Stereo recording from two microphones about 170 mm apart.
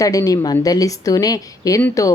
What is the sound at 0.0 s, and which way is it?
Speech, 20° left (ahead or behind).